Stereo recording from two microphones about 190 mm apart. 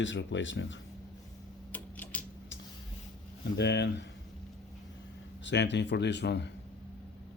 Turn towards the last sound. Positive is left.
turn(degrees=65)  # may be behind; listen again after turning